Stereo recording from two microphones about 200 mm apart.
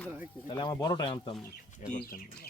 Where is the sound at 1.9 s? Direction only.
45° left (ahead or behind).